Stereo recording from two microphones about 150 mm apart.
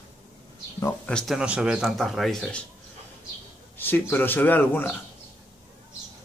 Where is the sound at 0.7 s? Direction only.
20° left (ahead or behind).